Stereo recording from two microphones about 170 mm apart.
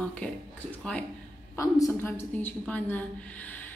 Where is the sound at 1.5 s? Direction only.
20° left (ahead or behind).